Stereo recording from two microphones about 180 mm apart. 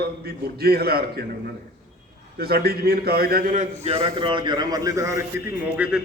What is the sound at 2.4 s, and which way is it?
A man's voice, 60° right (ahead or behind).